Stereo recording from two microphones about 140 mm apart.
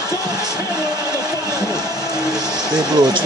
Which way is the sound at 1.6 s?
20° left (ahead or behind).